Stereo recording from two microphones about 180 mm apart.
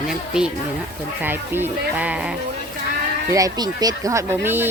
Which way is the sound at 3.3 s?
20° right (ahead or behind).